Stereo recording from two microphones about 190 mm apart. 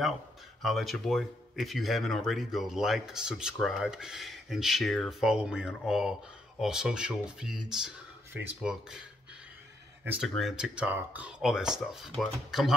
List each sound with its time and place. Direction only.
0.6 s speech: centre (ahead or behind)
10.2 s speech: centre (ahead or behind)